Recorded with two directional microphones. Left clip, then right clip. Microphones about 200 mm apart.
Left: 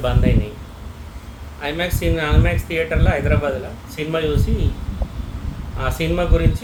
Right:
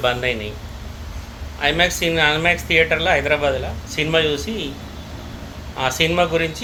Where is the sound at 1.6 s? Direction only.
15° left (ahead or behind).